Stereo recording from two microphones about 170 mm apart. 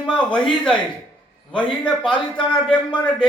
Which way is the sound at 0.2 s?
5° left (ahead or behind).